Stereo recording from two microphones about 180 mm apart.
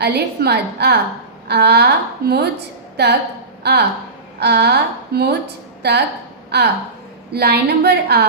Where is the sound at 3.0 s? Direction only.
65° right (ahead or behind).